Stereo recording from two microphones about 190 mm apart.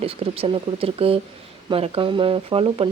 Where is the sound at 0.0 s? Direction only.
30° right (ahead or behind).